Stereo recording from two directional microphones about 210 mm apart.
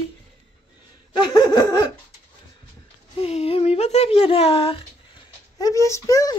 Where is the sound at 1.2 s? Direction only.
20° left (ahead or behind).